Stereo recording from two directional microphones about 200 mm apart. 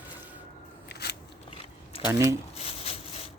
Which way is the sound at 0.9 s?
55° left (ahead or behind).